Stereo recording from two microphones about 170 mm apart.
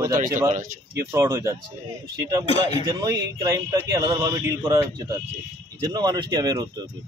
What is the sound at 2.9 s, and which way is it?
Speech, 20° right (ahead or behind).